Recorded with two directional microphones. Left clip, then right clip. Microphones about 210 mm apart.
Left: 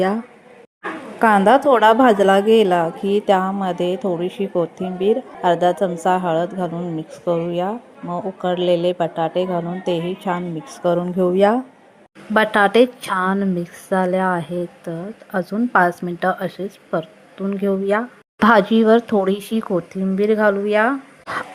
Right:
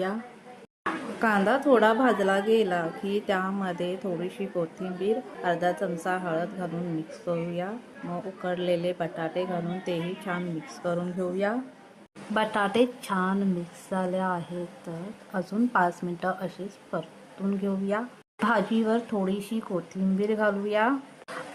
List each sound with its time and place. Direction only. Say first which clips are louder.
1.2 s a woman's voice: left 12 dB; 30° left (ahead or behind)